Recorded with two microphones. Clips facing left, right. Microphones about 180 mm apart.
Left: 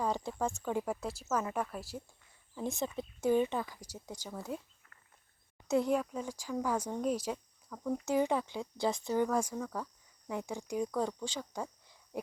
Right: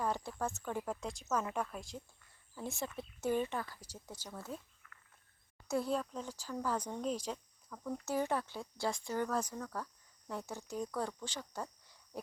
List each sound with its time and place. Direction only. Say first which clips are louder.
0.0 s speech: left 3 dB; 15° left (ahead or behind)
2.6 s speech: left 5 dB; 20° left (ahead or behind)
5.6 s speech: left 5 dB; 20° left (ahead or behind)
12.1 s a sound: left 5 dB; 15° left (ahead or behind)